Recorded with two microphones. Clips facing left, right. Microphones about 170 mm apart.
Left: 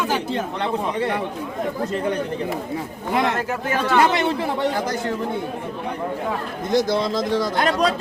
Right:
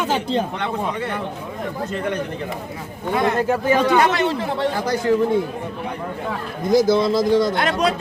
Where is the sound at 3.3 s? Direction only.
15° right (ahead or behind).